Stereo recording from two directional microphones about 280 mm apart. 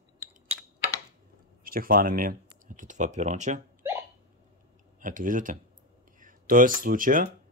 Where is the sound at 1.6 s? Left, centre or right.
Right.